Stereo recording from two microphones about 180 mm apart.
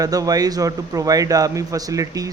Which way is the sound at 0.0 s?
20° right (ahead or behind).